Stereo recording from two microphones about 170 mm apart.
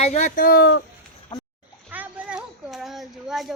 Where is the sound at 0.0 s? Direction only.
40° left (ahead or behind); by 0.9 s 85° left.